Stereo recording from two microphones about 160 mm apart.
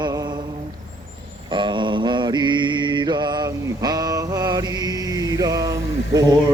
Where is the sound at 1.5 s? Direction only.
30° right (ahead or behind).